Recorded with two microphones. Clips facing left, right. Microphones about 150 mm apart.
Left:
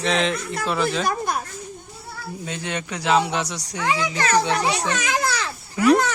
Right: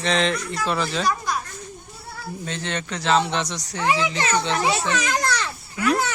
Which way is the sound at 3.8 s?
20° right (ahead or behind).